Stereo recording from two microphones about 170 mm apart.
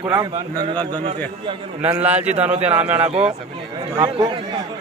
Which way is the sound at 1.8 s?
10° right (ahead or behind).